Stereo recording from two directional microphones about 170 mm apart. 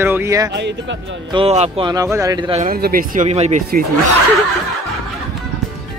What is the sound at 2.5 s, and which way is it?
Speech, 55° right (ahead or behind).